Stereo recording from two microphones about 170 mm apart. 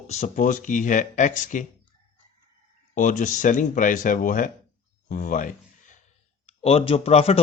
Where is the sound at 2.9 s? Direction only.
50° left (ahead or behind).